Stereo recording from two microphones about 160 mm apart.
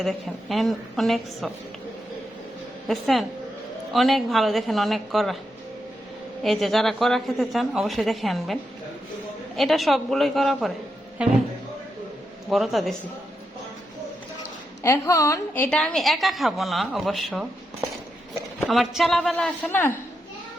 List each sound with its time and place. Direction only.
0.0 s a woman's voice: centre (ahead or behind)
2.8 s a woman's voice: centre (ahead or behind)
6.4 s a woman's voice: centre (ahead or behind)
9.6 s a woman's voice: centre (ahead or behind)
12.5 s a woman's voice: centre (ahead or behind)
14.8 s a woman's voice: 20° left (ahead or behind); by 17.4 s centre (ahead or behind)
18.6 s a woman's voice: centre (ahead or behind)